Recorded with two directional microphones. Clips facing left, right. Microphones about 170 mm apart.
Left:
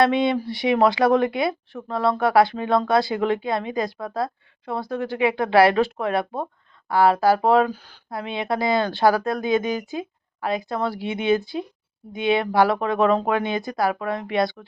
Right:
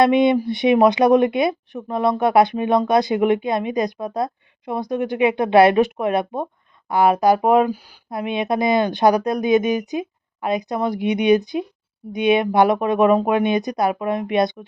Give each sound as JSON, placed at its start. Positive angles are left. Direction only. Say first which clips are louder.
{"t": 0.0, "sound": "speech", "louder": "right 4 dB", "side_deg": -20}